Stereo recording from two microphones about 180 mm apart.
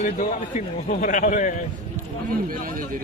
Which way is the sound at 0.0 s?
45° left (ahead or behind).